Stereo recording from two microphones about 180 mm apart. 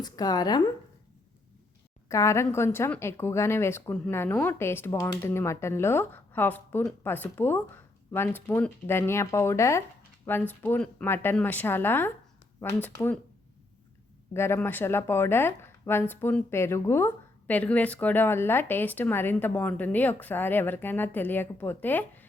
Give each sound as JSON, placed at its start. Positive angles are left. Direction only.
{"t": 0.0, "sound": "speech", "side_deg": 20}
{"t": 2.0, "sound": "speech", "side_deg": 15}
{"t": 14.3, "sound": "speech", "side_deg": 15}